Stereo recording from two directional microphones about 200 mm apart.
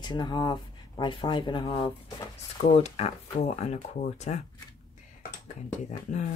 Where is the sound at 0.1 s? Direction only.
20° left (ahead or behind).